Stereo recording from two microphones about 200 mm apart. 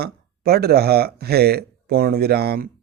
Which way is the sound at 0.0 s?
50° right (ahead or behind).